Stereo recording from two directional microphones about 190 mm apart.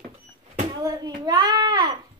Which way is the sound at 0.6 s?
20° right (ahead or behind).